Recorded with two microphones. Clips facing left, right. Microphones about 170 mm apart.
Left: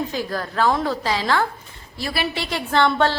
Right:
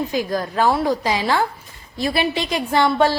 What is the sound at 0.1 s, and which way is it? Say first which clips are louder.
A woman's voice: right 4 dB; 15° right (ahead or behind).